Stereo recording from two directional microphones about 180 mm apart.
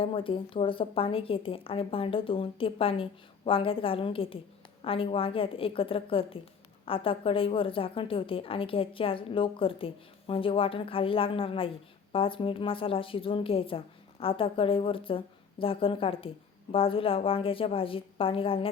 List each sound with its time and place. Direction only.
0.0 s a woman's voice: 30° left (ahead or behind)